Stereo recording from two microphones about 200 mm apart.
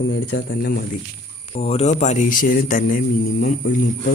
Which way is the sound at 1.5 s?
30° left (ahead or behind).